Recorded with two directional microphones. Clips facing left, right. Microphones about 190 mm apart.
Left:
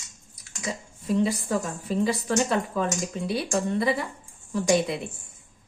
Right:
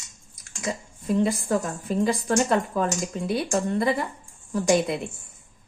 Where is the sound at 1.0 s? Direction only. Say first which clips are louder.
Right 1 dB; 50° right (ahead or behind).